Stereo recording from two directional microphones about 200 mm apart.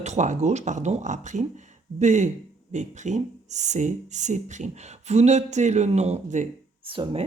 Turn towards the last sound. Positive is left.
turn(degrees=-25)  # may be behind; listen again after turning